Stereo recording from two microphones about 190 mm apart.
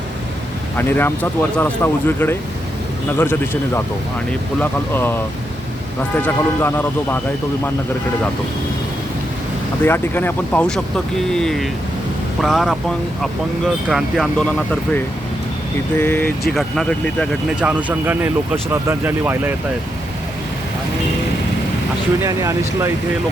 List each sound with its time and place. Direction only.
0.8 s speech: 10° left (ahead or behind)
9.8 s speech: 10° left (ahead or behind)
13.8 s speech: centre (ahead or behind)
22.2 s speech: 15° right (ahead or behind)